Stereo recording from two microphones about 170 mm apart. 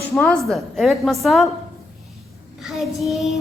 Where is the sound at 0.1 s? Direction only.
Centre (ahead or behind).